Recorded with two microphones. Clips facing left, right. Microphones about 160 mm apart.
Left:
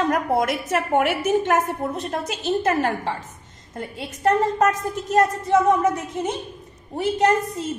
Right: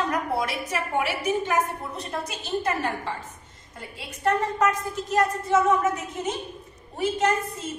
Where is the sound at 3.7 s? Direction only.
45° left (ahead or behind).